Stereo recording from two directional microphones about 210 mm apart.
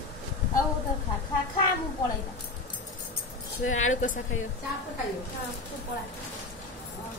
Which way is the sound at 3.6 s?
75° left (ahead or behind).